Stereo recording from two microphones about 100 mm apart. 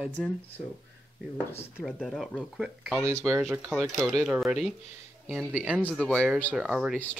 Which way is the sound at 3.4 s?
25° right (ahead or behind).